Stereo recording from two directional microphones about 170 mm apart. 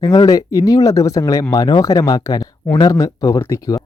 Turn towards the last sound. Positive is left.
turn(degrees=20)  # may be behind; listen again after turning